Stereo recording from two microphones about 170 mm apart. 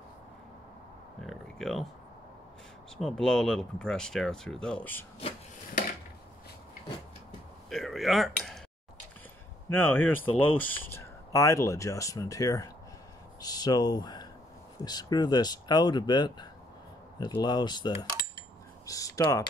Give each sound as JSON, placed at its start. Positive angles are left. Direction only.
{"t": 1.2, "sound": "a sound", "side_deg": 0}
{"t": 3.0, "sound": "speech", "side_deg": 5}
{"t": 7.7, "sound": "speech", "side_deg": 0}
{"t": 9.7, "sound": "speech", "side_deg": 10}